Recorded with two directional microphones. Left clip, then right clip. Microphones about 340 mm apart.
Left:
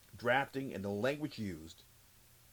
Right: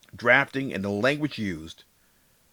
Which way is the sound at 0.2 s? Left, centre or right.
Right.